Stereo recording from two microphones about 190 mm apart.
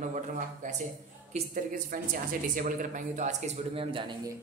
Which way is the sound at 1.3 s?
45° right (ahead or behind).